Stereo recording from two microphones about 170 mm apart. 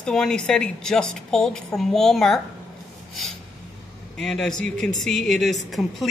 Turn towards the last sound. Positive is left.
turn(degrees=0)  # may be behind; listen again after turning